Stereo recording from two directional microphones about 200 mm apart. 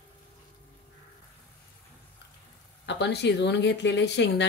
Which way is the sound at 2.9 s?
60° left (ahead or behind).